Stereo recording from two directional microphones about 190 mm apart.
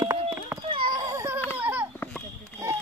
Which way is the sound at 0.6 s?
25° right (ahead or behind).